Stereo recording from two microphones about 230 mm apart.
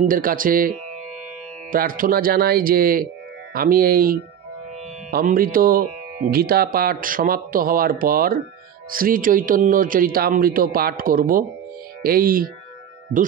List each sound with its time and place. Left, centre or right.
0.0 s a man's voice: right